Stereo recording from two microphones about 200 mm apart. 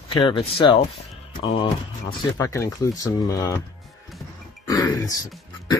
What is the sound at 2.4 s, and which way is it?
Speech, 15° left (ahead or behind).